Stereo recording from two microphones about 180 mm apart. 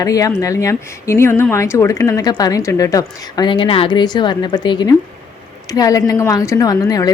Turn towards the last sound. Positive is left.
turn(degrees=20)  # may be behind; listen again after turning